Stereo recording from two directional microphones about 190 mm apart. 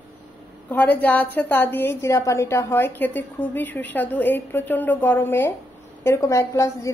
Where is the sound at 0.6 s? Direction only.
10° left (ahead or behind).